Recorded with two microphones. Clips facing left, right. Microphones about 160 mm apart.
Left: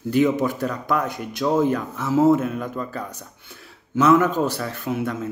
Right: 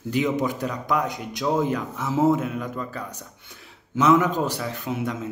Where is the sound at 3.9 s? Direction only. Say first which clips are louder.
Left 2 dB; 15° right (ahead or behind).